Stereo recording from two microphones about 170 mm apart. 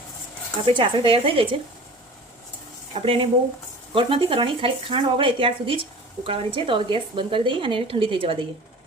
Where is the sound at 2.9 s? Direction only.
35° right (ahead or behind).